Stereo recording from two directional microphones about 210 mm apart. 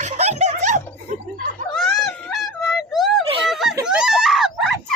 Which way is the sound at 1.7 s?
Centre (ahead or behind).